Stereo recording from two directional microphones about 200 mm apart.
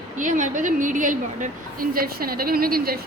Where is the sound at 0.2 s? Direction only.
40° right (ahead or behind).